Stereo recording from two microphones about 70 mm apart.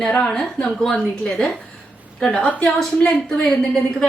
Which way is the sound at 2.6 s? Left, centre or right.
Centre.